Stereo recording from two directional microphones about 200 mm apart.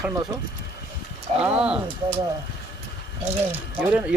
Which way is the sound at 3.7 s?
10° right (ahead or behind).